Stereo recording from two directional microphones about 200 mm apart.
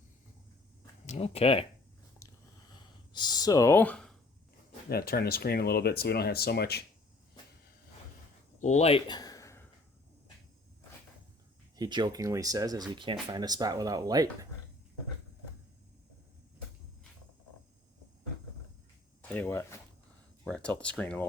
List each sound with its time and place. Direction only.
1.0 s speech: 30° left (ahead or behind)
2.2 s a sound: 15° left (ahead or behind)
3.1 s speech: 20° left (ahead or behind); by 4.2 s 5° left (ahead or behind)
4.9 s speech: 50° left (ahead or behind)
8.5 s a sound: 35° left (ahead or behind); by 9.6 s 15° left (ahead or behind)
11.8 s speech: 20° right (ahead or behind)
19.3 s speech: 10° left (ahead or behind)